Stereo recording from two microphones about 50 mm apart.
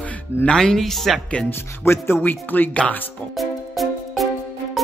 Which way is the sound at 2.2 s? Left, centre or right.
Left.